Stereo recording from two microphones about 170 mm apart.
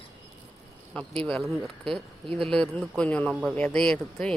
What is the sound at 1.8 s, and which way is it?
Speech, 30° right (ahead or behind).